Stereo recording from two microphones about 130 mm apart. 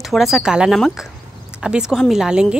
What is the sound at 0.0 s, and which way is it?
Speech, centre (ahead or behind).